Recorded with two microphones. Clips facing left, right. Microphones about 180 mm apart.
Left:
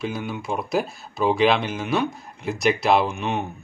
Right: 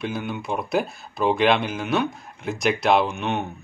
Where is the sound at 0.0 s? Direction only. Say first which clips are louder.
Even; centre (ahead or behind).